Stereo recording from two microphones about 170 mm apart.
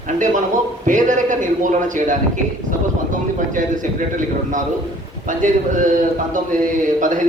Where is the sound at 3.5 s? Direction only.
50° right (ahead or behind).